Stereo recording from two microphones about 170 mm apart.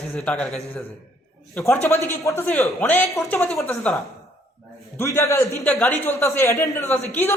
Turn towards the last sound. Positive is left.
turn(degrees=15)  # may be behind; listen again after turning